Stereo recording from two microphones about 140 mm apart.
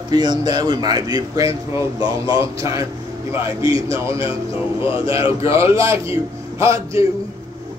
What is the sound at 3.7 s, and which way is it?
A man's voice, 40° left (ahead or behind).